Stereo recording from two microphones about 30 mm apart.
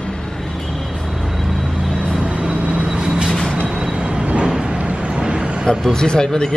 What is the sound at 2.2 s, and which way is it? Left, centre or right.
Vehicle, right.